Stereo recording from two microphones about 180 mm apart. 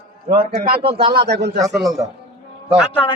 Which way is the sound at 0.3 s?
55° right (ahead or behind).